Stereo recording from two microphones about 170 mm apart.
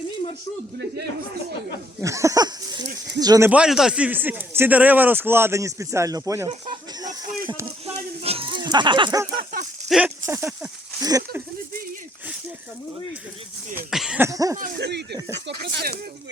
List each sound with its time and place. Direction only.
2.0 s speech: 15° right (ahead or behind)
3.5 s speech: 5° right (ahead or behind)
7.9 s a sound: 35° right (ahead or behind)
9.9 s speech: centre (ahead or behind)
10.2 s speech: 15° right (ahead or behind)
13.9 s cough: centre (ahead or behind)
14.2 s speech: 20° right (ahead or behind)
14.8 s speech: 85° right